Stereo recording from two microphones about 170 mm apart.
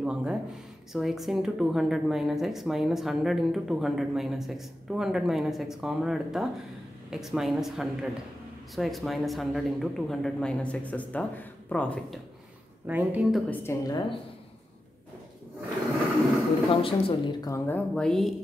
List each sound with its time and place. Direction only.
0.0 s speech: 5° right (ahead or behind)
12.8 s a woman's voice: 10° right (ahead or behind)
13.5 s a woman's voice: 15° left (ahead or behind)
16.7 s speech: 30° left (ahead or behind)
17.5 s speech: 10° left (ahead or behind)